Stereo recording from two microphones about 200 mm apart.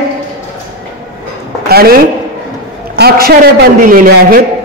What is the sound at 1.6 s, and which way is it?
A man's voice, 50° right (ahead or behind).